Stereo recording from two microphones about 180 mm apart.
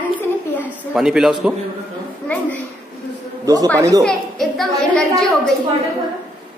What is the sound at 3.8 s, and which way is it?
Speech, 20° right (ahead or behind).